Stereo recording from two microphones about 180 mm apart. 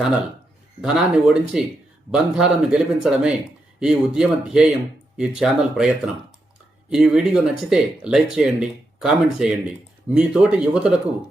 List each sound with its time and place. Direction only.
0.0 s speech: 5° right (ahead or behind)
6.9 s speech: 5° right (ahead or behind)